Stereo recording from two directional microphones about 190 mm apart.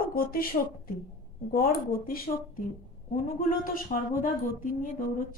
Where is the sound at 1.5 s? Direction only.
50° left (ahead or behind).